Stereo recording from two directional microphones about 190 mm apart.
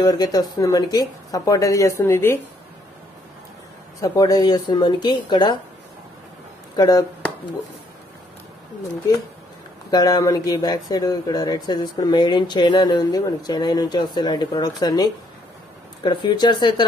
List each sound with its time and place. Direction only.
0.0 s speech: 20° left (ahead or behind)
4.0 s speech: 20° left (ahead or behind)
6.8 s speech: 20° left (ahead or behind)
9.8 s speech: 20° left (ahead or behind)